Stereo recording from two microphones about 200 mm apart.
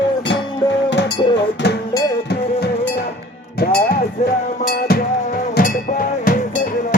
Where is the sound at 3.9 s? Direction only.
35° left (ahead or behind).